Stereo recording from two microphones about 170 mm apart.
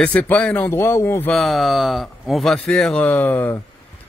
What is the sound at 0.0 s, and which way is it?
Speech, 10° left (ahead or behind).